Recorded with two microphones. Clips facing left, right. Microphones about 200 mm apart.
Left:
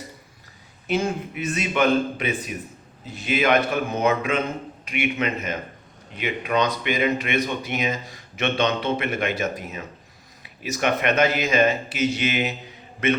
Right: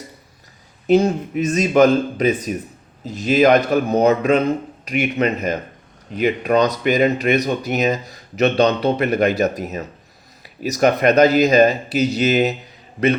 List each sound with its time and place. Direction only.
0.9 s speech: 40° right (ahead or behind)